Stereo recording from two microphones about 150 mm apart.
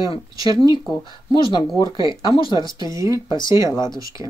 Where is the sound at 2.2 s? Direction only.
30° left (ahead or behind).